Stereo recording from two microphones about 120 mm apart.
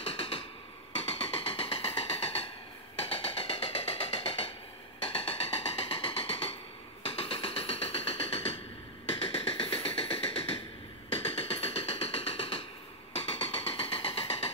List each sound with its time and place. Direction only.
0.0 s hammer: 55° left (ahead or behind)
1.0 s music: 55° left (ahead or behind)